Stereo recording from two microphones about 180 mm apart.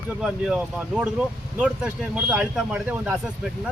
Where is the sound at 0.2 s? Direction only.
5° right (ahead or behind).